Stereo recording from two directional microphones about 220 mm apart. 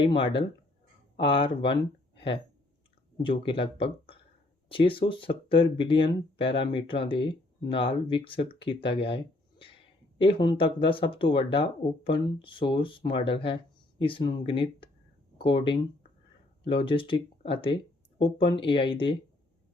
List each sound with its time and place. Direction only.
0.0 s speech: 25° left (ahead or behind)